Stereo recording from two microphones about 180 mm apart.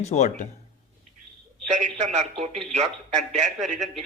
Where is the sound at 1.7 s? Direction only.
40° right (ahead or behind).